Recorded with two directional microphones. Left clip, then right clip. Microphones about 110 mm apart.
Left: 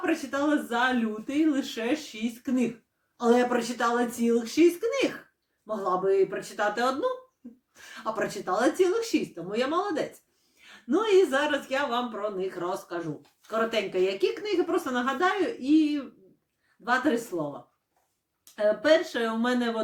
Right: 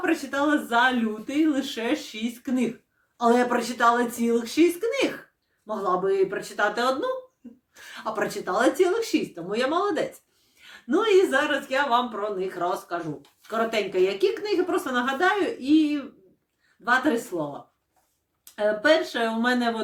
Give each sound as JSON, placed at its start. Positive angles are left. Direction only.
{"t": 0.0, "sound": "speech", "side_deg": -15}
{"t": 18.5, "sound": "speech", "side_deg": -20}